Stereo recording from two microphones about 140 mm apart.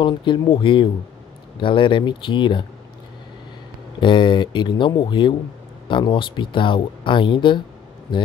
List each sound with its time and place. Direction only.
0.0 s speech: 35° left (ahead or behind)
4.0 s speech: 35° left (ahead or behind)